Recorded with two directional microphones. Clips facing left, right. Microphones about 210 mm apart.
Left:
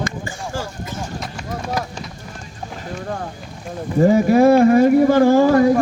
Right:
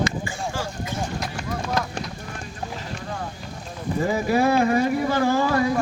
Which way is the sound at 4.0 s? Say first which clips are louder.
Left 9 dB; 45° left (ahead or behind).